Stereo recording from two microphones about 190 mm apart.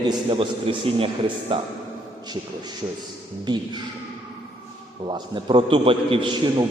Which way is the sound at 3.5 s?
20° right (ahead or behind).